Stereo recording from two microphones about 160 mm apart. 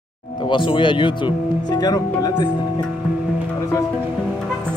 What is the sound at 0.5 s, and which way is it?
Speech, 30° left (ahead or behind).